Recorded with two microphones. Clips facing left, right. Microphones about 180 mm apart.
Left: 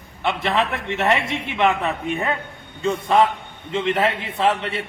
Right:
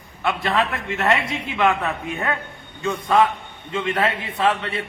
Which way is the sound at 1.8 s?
25° left (ahead or behind).